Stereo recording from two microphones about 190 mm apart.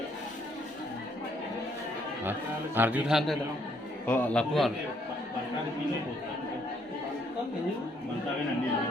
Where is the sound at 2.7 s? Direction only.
10° right (ahead or behind).